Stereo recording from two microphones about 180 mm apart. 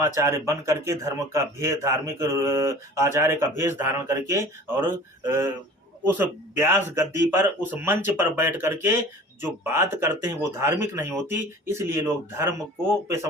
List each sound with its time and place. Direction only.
0.0 s speech: 15° right (ahead or behind)